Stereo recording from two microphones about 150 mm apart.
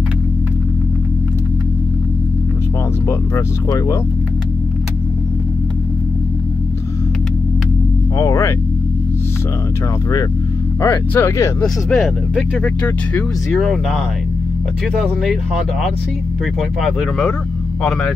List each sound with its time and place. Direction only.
3.1 s speech: 20° left (ahead or behind)
8.2 s speech: 20° left (ahead or behind)
10.8 s speech: 20° left (ahead or behind)
11.6 s speech: centre (ahead or behind)